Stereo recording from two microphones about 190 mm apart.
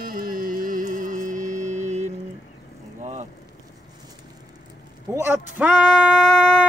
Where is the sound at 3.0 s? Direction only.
35° right (ahead or behind).